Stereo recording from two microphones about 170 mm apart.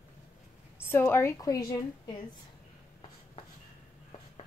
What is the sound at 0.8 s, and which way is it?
A woman's voice, 15° left (ahead or behind).